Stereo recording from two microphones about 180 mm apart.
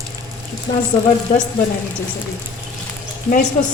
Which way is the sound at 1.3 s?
45° left (ahead or behind).